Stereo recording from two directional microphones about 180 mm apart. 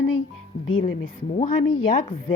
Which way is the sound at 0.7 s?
30° left (ahead or behind).